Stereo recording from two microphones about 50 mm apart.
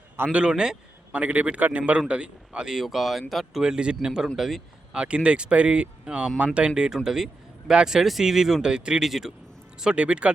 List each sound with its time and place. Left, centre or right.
0.3 s speech: centre
1.1 s speech: right
2.8 s speech: centre
3.6 s a man's voice: centre
4.9 s speech: right
9.0 s speech: centre
9.8 s speech: right